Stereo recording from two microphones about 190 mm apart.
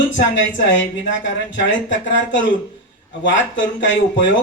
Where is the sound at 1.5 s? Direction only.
75° left (ahead or behind).